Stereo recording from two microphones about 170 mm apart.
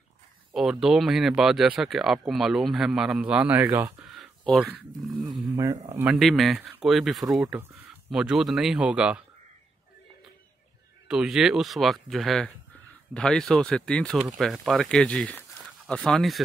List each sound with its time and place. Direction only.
0.5 s speech: 5° right (ahead or behind)
3.6 s speech: 20° right (ahead or behind)
4.0 s a sound: centre (ahead or behind)
6.1 s speech: centre (ahead or behind)
11.1 s speech: 5° right (ahead or behind)